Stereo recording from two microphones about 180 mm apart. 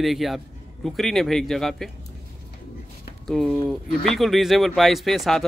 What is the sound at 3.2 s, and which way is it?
Speech, centre (ahead or behind).